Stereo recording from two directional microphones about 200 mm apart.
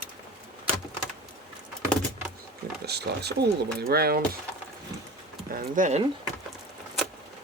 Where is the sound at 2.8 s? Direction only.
55° right (ahead or behind).